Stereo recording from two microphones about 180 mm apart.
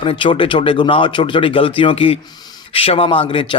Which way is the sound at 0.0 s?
25° left (ahead or behind).